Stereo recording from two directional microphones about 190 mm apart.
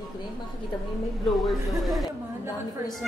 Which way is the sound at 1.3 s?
Centre (ahead or behind).